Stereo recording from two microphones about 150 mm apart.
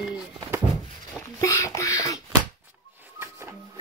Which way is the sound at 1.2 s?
20° left (ahead or behind).